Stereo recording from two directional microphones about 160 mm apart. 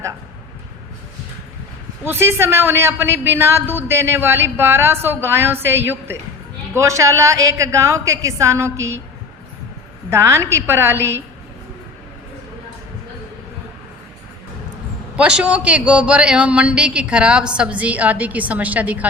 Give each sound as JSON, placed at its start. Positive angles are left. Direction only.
{"t": 2.0, "sound": "a woman's voice", "side_deg": -15}
{"t": 10.1, "sound": "a woman's voice", "side_deg": -15}
{"t": 15.1, "sound": "a woman's voice", "side_deg": -5}